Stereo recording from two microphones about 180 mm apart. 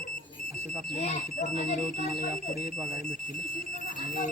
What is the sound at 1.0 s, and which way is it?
Speech, 45° left (ahead or behind).